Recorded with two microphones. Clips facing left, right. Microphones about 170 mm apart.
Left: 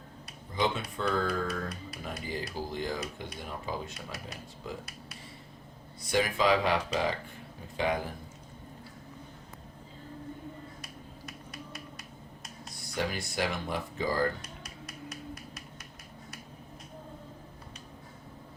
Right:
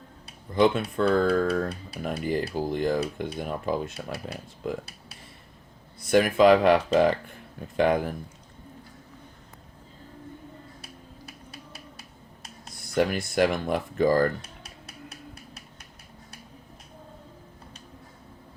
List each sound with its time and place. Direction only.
0.5 s speech: 60° right (ahead or behind)
6.1 s speech: 55° right (ahead or behind)
11.3 s a sound: 30° right (ahead or behind)
12.9 s speech: 55° right (ahead or behind)